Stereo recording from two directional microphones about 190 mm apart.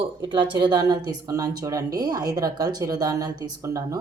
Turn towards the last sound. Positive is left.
turn(degrees=-15)  # may be behind; listen again after turning